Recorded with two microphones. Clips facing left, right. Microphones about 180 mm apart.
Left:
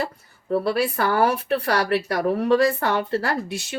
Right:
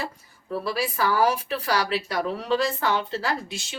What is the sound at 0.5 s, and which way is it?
Speech, 60° left (ahead or behind).